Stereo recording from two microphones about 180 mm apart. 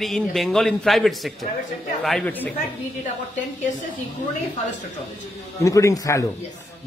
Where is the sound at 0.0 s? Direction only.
Centre (ahead or behind).